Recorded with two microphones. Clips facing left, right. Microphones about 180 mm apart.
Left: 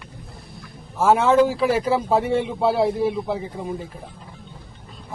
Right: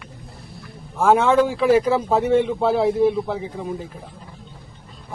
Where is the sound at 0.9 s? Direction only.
5° left (ahead or behind).